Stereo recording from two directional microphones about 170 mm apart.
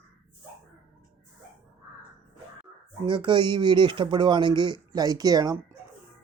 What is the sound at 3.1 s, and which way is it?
Speech, 30° right (ahead or behind).